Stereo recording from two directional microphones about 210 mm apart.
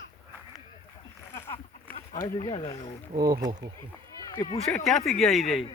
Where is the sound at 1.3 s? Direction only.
10° left (ahead or behind).